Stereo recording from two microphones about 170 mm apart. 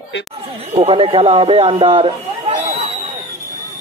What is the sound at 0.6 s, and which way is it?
Speech, 35° right (ahead or behind).